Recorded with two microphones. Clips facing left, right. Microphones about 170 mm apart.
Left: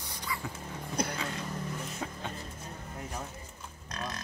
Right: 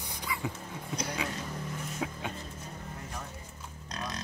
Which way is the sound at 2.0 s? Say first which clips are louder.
Right 6 dB; 10° right (ahead or behind).